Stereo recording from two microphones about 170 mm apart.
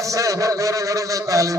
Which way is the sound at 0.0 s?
20° right (ahead or behind).